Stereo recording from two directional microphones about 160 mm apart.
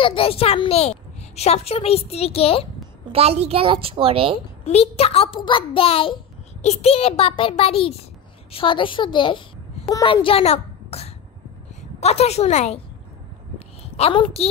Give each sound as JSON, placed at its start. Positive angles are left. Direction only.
{"t": 0.0, "sound": "a child's voice", "side_deg": 35}
{"t": 3.1, "sound": "a woman's voice", "side_deg": -40}
{"t": 4.6, "sound": "a child's voice", "side_deg": 40}
{"t": 13.9, "sound": "a child's voice", "side_deg": 35}